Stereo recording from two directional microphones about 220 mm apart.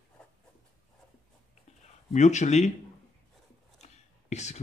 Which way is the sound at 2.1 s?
30° left (ahead or behind).